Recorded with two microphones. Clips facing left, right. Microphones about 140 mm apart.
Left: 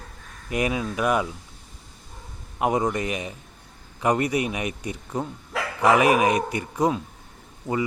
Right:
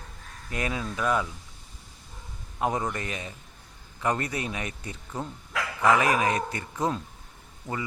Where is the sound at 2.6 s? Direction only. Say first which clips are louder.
Left 5 dB; 15° left (ahead or behind).